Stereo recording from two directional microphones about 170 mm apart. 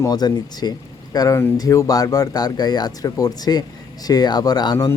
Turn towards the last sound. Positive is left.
turn(degrees=25)  # may be behind; listen again after turning